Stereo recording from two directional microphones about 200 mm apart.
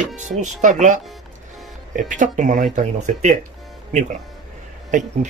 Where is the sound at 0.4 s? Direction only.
35° right (ahead or behind).